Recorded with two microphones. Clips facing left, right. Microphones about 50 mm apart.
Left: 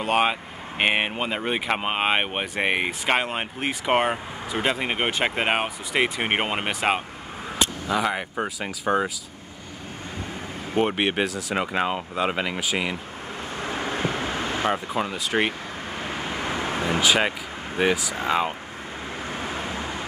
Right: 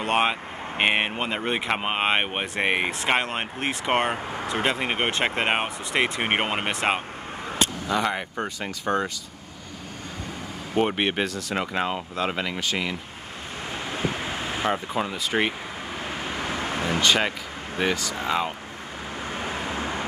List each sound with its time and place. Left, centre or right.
0.0 s speech: centre
10.8 s speech: centre
13.7 s vehicle: left
14.6 s speech: centre
16.1 s vehicle: centre
17.7 s speech: centre
18.1 s speech: left
19.8 s vehicle: right